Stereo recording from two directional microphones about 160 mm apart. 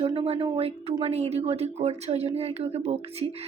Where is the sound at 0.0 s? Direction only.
35° right (ahead or behind).